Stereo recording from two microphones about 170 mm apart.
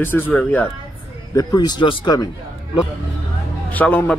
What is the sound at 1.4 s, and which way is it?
Speech, 20° left (ahead or behind).